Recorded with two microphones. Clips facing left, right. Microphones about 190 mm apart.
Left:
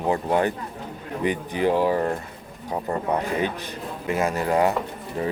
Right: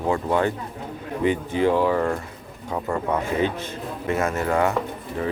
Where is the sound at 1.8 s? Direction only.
35° left (ahead or behind).